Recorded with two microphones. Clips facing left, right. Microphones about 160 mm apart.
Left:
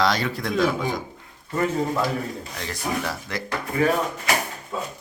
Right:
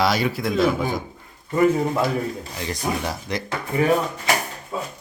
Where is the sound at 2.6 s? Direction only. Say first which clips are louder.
Right 2 dB; 15° right (ahead or behind).